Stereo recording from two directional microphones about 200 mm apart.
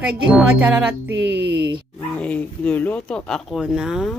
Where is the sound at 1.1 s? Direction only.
60° right (ahead or behind).